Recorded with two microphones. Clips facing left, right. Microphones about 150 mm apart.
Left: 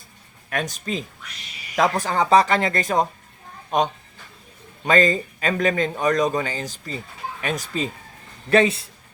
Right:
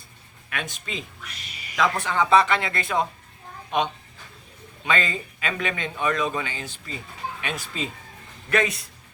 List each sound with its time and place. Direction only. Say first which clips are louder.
0.5 s a man's voice: left 6 dB; 40° left (ahead or behind)
8.4 s speech: left 6 dB; 30° left (ahead or behind)